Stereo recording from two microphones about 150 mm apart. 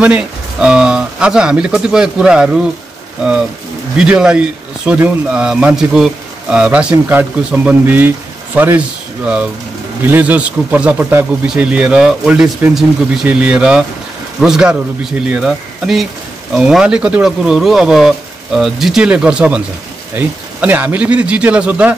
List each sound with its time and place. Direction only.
0.0 s speech: 5° right (ahead or behind)
4.0 s speech: 5° right (ahead or behind)